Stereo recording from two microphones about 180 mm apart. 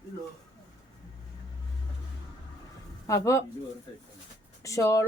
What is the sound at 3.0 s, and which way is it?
Speech, 15° left (ahead or behind).